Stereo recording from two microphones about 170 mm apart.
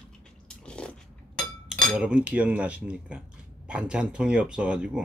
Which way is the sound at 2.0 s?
5° right (ahead or behind).